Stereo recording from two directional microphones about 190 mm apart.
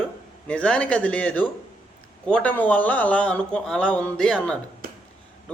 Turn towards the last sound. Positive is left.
turn(degrees=-50)  # may be behind; listen again after turning